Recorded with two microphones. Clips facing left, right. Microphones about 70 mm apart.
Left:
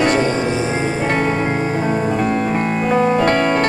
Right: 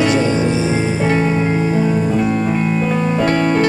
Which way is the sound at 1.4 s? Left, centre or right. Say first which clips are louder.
Right 2 dB; left.